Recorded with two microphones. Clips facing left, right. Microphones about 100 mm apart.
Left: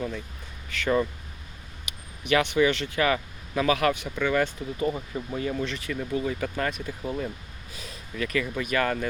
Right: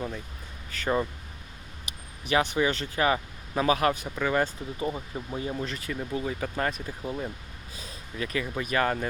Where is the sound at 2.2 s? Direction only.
35° right (ahead or behind).